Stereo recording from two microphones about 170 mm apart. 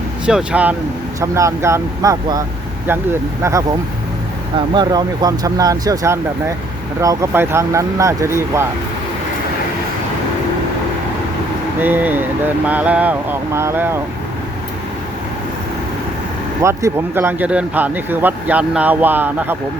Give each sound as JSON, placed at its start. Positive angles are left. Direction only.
{"t": 0.3, "sound": "speech", "side_deg": -5}
{"t": 4.5, "sound": "speech", "side_deg": -25}
{"t": 11.8, "sound": "speech", "side_deg": -10}
{"t": 16.6, "sound": "speech", "side_deg": -15}